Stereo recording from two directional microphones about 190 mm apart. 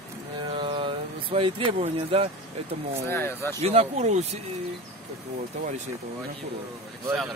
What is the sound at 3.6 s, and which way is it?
Speech, 35° right (ahead or behind).